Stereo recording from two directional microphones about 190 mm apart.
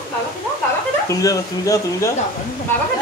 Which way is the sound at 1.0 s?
15° left (ahead or behind).